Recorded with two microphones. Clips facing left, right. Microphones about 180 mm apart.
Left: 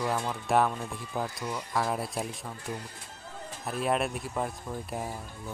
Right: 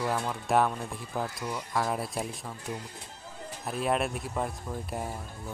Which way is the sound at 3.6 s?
Centre (ahead or behind).